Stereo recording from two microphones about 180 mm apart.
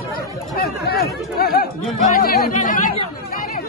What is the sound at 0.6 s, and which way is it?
Chatter, 60° left (ahead or behind).